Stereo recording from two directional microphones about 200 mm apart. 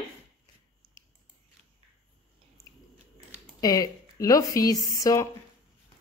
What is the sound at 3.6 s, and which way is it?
Speech, 15° left (ahead or behind).